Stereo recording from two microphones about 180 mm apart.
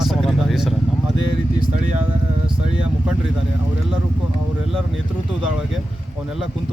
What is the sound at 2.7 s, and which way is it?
Speech, 5° right (ahead or behind).